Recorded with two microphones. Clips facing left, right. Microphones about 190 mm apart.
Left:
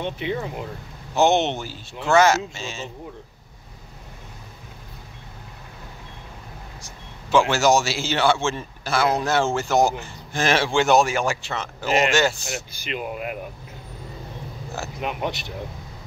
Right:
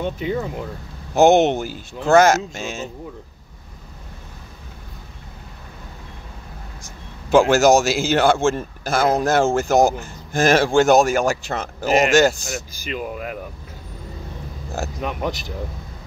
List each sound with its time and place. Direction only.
0.0 s a man's voice: 40° right (ahead or behind)
6.8 s a man's voice: 45° right (ahead or behind)
14.8 s a man's voice: 45° right (ahead or behind)